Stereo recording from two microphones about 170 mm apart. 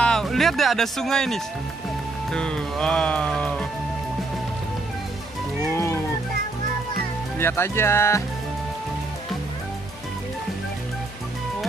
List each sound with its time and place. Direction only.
0.0 s speech: centre (ahead or behind)
5.8 s music: 15° left (ahead or behind)
7.3 s speech: 15° left (ahead or behind)